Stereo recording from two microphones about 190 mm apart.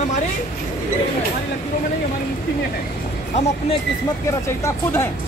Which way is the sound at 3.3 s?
35° left (ahead or behind).